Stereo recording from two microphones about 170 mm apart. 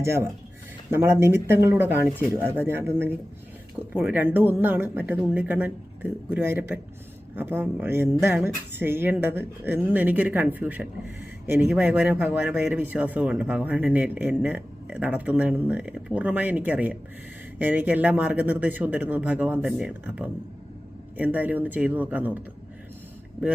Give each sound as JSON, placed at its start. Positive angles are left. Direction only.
{"t": 0.0, "sound": "speech", "side_deg": -15}